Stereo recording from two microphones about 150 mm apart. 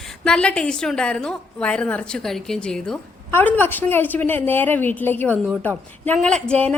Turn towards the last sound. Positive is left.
turn(degrees=5)  # may be behind; listen again after turning